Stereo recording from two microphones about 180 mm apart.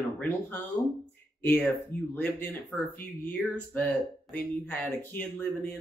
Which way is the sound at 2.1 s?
10° left (ahead or behind).